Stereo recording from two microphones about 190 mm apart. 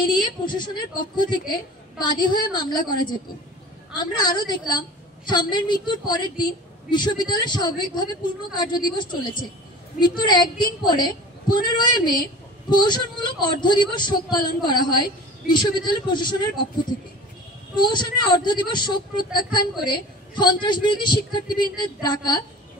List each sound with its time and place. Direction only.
0.0 s a woman's voice: 25° left (ahead or behind)
3.9 s a woman's voice: 25° left (ahead or behind)
17.7 s a woman's voice: 25° left (ahead or behind)